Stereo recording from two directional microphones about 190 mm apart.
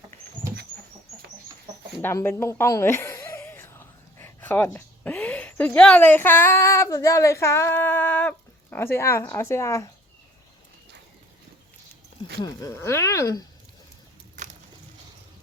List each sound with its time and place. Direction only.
2.0 s speech: 10° left (ahead or behind)
12.4 s speech: 20° left (ahead or behind)